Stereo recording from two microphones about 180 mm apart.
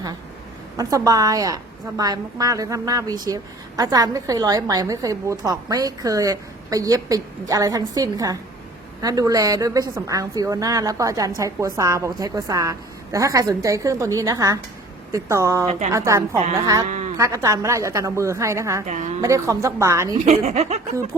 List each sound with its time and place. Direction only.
0.8 s a woman's voice: 20° right (ahead or behind)
15.6 s speech: 35° right (ahead or behind)
15.9 s a woman's voice: 15° right (ahead or behind)
16.9 s a sound: 40° right (ahead or behind)
17.2 s a woman's voice: 15° right (ahead or behind)
18.9 s speech: 40° right (ahead or behind)
19.2 s a woman's voice: 15° right (ahead or behind)
20.2 s speech: 35° right (ahead or behind)